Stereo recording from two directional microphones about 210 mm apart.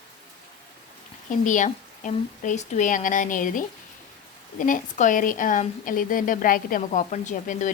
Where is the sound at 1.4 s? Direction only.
35° left (ahead or behind).